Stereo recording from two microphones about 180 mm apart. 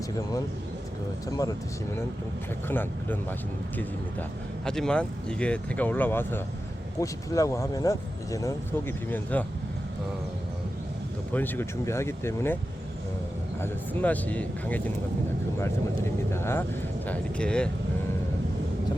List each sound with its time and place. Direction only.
1.3 s speech: 20° left (ahead or behind)
2.6 s speech: 10° left (ahead or behind)
4.6 s speech: 5° left (ahead or behind)
11.3 s speech: 10° left (ahead or behind)
13.6 s speech: 10° left (ahead or behind)